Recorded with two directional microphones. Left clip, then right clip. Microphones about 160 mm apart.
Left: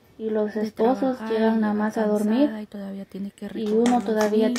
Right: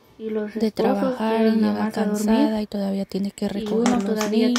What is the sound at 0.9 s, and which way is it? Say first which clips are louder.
Speech: left 1 dB; 30° right (ahead or behind).